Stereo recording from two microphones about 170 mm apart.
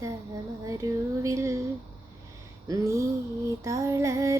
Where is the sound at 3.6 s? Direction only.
20° right (ahead or behind).